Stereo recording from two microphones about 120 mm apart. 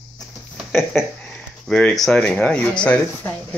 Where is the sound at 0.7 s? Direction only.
Centre (ahead or behind).